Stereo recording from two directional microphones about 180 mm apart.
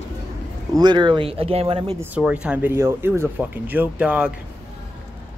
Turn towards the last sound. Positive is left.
turn(degrees=-10)  # may be behind; listen again after turning